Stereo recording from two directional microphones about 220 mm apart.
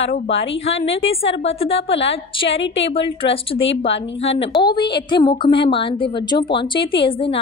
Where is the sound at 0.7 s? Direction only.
25° left (ahead or behind).